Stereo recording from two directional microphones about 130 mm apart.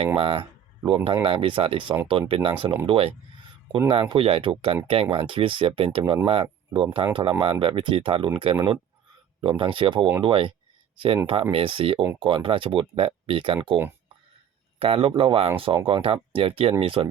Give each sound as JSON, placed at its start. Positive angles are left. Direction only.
{"t": 0.2, "sound": "speech", "side_deg": -45}
{"t": 14.8, "sound": "speech", "side_deg": -45}